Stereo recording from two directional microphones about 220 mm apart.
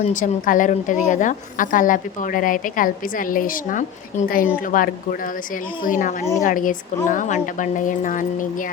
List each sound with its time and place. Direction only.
0.0 s a woman's voice: 35° left (ahead or behind)